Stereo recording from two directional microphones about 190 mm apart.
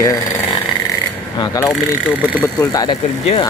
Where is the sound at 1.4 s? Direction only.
15° left (ahead or behind).